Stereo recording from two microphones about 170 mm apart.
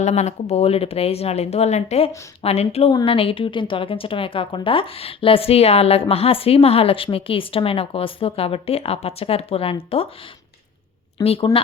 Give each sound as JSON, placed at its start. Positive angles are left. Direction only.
{"t": 0.0, "sound": "a woman's voice", "side_deg": 40}
{"t": 11.2, "sound": "a woman's voice", "side_deg": 35}